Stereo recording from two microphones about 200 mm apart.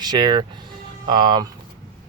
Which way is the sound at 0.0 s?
20° right (ahead or behind).